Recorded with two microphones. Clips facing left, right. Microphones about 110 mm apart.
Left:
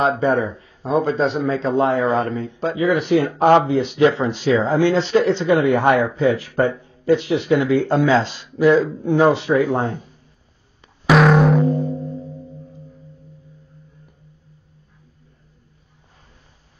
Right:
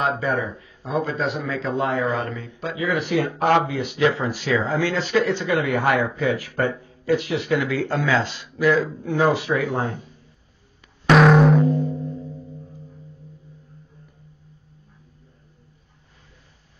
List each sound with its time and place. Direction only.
0.2 s speech: 30° left (ahead or behind)
11.1 s music: centre (ahead or behind)
11.6 s music: 35° left (ahead or behind)